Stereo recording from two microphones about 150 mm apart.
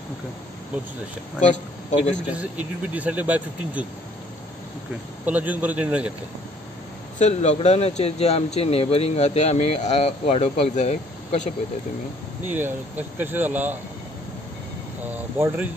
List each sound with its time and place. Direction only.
1.4 s speech: 55° left (ahead or behind)
2.9 s speech: 10° right (ahead or behind)
5.2 s speech: 10° right (ahead or behind)
7.2 s speech: 50° left (ahead or behind)
12.4 s speech: 15° right (ahead or behind)
15.3 s speech: 15° right (ahead or behind)